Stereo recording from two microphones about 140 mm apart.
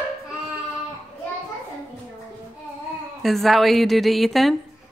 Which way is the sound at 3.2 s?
Centre (ahead or behind).